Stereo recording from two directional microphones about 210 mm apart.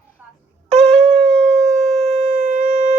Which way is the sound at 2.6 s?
35° right (ahead or behind).